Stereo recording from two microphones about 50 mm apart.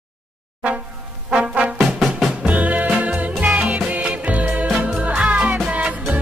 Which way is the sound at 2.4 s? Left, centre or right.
Right.